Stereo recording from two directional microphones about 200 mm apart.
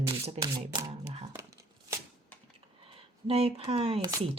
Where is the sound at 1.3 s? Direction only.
15° right (ahead or behind).